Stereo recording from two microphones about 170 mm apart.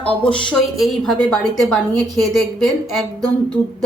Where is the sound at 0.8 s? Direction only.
Centre (ahead or behind).